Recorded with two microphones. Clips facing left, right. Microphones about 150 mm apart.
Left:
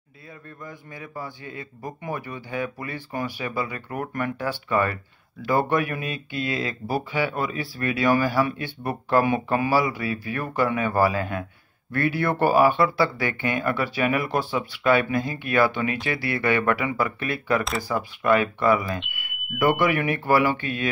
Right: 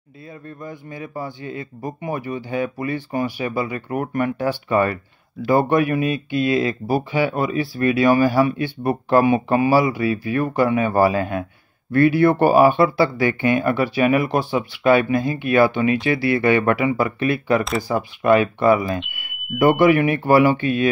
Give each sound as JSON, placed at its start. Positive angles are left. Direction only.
{"t": 0.6, "sound": "speech", "side_deg": -25}
{"t": 19.5, "sound": "speech", "side_deg": -45}
{"t": 19.8, "sound": "speech", "side_deg": -25}